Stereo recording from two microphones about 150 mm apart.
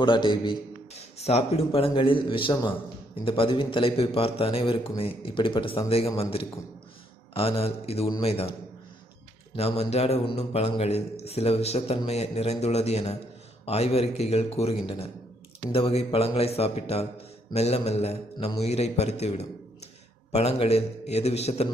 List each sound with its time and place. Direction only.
0.0 s a man's voice: 30° left (ahead or behind)
1.1 s a man's voice: 45° left (ahead or behind)
9.6 s a man's voice: 40° left (ahead or behind)